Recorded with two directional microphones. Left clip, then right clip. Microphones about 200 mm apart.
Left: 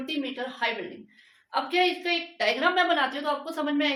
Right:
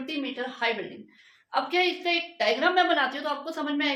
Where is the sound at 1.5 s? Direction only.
10° right (ahead or behind).